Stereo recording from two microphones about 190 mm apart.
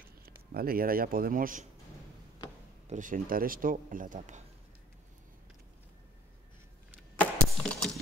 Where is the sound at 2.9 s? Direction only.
45° right (ahead or behind).